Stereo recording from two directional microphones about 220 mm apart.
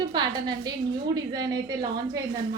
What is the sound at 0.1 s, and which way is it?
A woman's voice, 20° right (ahead or behind).